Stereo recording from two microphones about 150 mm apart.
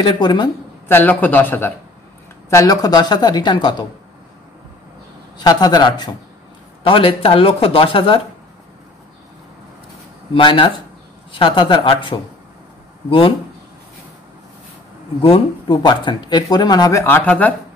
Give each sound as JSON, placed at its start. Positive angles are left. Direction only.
{"t": 0.0, "sound": "speech", "side_deg": 30}
{"t": 0.8, "sound": "speech", "side_deg": 10}
{"t": 5.4, "sound": "speech", "side_deg": 25}
{"t": 10.3, "sound": "speech", "side_deg": 35}
{"t": 15.2, "sound": "speech", "side_deg": 35}
{"t": 17.0, "sound": "speech", "side_deg": 15}